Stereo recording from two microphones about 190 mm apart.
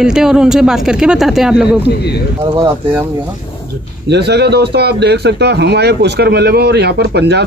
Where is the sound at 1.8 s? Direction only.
60° left (ahead or behind).